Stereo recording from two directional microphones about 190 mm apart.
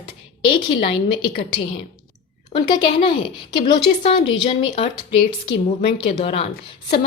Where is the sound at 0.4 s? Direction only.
25° left (ahead or behind).